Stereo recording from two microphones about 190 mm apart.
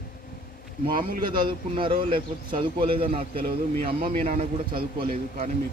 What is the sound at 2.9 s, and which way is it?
Speech, 30° right (ahead or behind).